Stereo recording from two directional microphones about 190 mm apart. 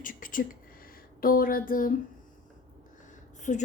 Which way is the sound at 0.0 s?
45° left (ahead or behind).